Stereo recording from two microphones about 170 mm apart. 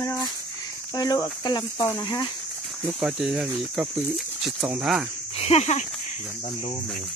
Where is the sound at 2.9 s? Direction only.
5° right (ahead or behind).